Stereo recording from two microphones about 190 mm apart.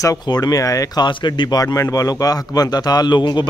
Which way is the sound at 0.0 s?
20° left (ahead or behind).